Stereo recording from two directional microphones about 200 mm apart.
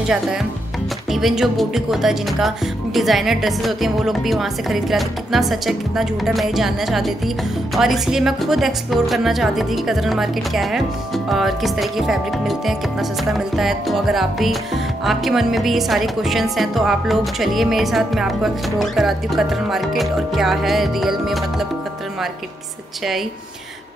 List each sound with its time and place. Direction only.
1.1 s a woman's voice: centre (ahead or behind)